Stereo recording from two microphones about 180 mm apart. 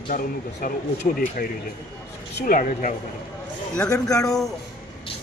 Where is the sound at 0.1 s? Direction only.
50° left (ahead or behind).